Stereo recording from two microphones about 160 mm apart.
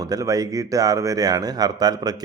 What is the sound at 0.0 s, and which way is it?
Speech, 20° right (ahead or behind).